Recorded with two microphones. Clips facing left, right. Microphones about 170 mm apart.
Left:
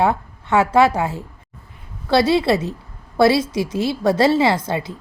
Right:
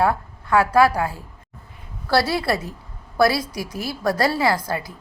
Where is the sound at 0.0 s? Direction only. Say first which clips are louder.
Left 2 dB; 25° left (ahead or behind).